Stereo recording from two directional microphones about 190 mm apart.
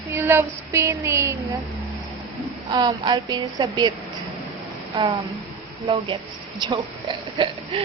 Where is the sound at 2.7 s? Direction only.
20° right (ahead or behind).